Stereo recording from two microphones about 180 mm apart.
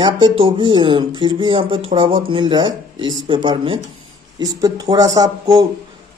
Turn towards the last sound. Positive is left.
turn(degrees=-20)  # may be behind; listen again after turning